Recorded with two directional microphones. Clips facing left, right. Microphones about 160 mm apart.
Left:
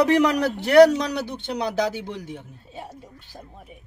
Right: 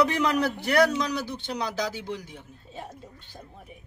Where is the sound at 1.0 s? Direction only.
65° left (ahead or behind).